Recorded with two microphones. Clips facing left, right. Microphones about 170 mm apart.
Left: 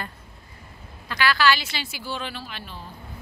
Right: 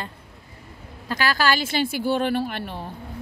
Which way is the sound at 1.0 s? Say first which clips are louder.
Even; 45° right (ahead or behind).